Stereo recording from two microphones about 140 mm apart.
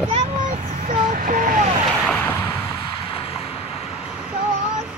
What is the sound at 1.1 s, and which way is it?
Vehicle, 80° right.